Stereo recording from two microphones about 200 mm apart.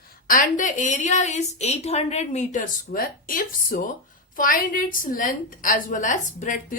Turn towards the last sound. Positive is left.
turn(degrees=40)  # may be behind; listen again after turning